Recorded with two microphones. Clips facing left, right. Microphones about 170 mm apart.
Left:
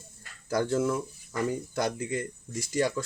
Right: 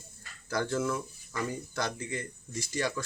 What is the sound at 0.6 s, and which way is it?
Speech, 25° left (ahead or behind).